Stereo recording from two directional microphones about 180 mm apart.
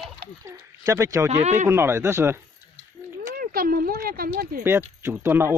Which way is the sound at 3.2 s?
55° right (ahead or behind).